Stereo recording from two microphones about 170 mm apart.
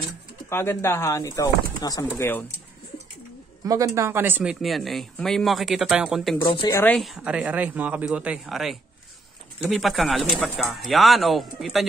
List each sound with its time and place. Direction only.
0.5 s speech: 15° left (ahead or behind)
3.6 s speech: 20° right (ahead or behind); by 6.3 s 5° right (ahead or behind)
6.4 s speech: 25° left (ahead or behind)
6.8 s speech: 5° left (ahead or behind)